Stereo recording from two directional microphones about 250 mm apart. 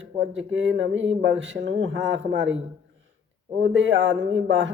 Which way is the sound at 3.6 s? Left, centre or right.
Right.